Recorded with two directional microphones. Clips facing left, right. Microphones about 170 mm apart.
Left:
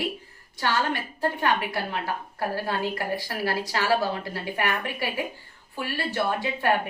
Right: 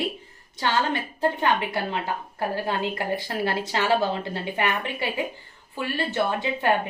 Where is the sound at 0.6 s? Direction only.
20° right (ahead or behind).